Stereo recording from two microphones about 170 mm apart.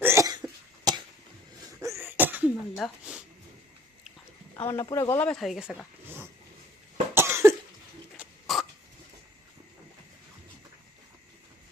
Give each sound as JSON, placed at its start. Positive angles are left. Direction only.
{"t": 0.0, "sound": "cough", "side_deg": -15}
{"t": 2.7, "sound": "speech", "side_deg": 0}
{"t": 4.5, "sound": "speech", "side_deg": 25}
{"t": 5.3, "sound": "speech", "side_deg": 0}
{"t": 7.1, "sound": "cough", "side_deg": -15}
{"t": 8.1, "sound": "a sound", "side_deg": -5}